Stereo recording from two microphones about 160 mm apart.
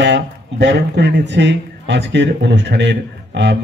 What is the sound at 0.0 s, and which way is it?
Speech, 90° right.